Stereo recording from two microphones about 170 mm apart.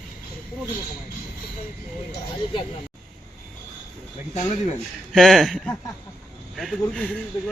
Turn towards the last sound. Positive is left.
turn(degrees=0)  # may be behind; listen again after turning